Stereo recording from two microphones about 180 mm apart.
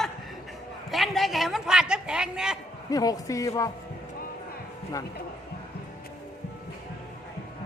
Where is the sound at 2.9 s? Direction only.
20° left (ahead or behind).